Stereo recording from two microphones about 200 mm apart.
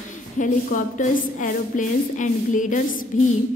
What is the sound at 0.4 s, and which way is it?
A woman's voice, 40° left (ahead or behind).